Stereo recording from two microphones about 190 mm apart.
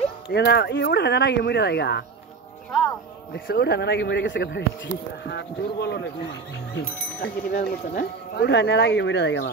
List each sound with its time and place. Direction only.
0.3 s speech: 60° left (ahead or behind)
3.3 s speech: 55° left (ahead or behind)